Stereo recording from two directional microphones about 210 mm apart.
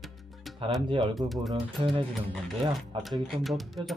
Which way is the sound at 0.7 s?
25° right (ahead or behind).